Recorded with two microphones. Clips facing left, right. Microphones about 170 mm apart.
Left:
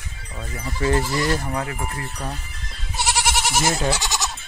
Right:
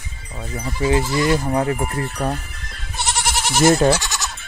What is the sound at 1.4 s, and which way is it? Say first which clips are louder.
Speech: right 8 dB; 30° right (ahead or behind).